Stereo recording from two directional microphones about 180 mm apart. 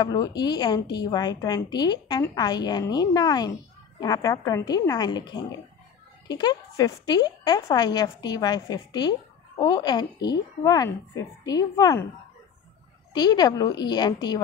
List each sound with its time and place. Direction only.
0.0 s a woman's voice: 20° left (ahead or behind)
13.1 s a woman's voice: 20° left (ahead or behind)